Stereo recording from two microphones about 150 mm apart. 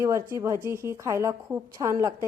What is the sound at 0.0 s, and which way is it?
A woman's voice, 20° right (ahead or behind).